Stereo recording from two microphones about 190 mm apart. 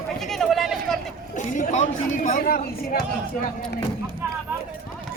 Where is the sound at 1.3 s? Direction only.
40° left (ahead or behind).